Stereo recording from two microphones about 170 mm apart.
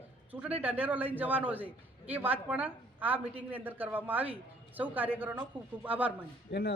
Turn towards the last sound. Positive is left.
turn(degrees=75)  # may be behind; listen again after turning